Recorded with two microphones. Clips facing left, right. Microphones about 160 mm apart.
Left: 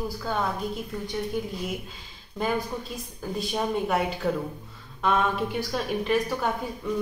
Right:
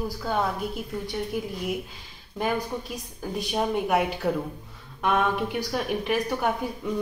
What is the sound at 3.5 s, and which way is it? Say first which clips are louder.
Speech: right 2 dB; 5° right (ahead or behind).